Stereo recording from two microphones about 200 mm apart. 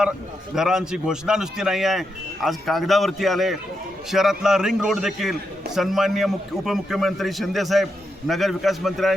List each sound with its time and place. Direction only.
0.5 s a man's voice: 5° right (ahead or behind)